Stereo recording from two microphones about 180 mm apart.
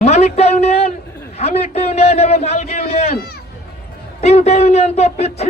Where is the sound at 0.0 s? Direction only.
35° left (ahead or behind).